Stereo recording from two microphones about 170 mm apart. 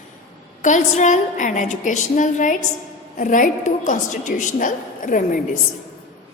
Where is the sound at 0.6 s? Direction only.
45° left (ahead or behind).